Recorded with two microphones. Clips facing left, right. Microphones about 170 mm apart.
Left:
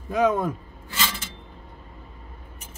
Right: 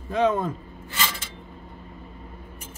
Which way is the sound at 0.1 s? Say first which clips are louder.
Left 1 dB; 10° left (ahead or behind).